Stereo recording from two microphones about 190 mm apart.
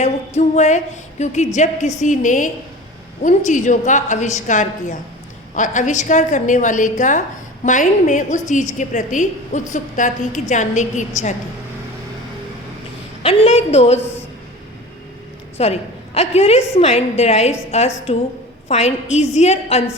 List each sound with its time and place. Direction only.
0.0 s a woman's voice: 35° left (ahead or behind)
13.2 s a woman's voice: 30° left (ahead or behind)
15.5 s a woman's voice: 35° left (ahead or behind)